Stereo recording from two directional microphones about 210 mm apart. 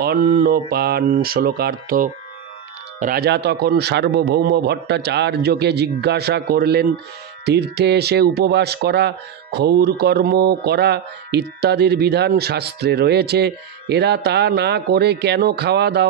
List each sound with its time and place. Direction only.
0.0 s speech: 45° right (ahead or behind)